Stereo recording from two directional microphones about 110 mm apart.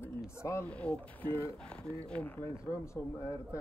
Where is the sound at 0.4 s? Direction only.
25° left (ahead or behind).